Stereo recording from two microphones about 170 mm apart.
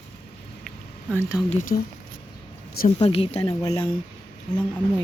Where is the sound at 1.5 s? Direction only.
45° left (ahead or behind).